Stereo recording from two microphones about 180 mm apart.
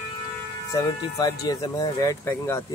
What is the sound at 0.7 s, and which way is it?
Speech, 20° left (ahead or behind).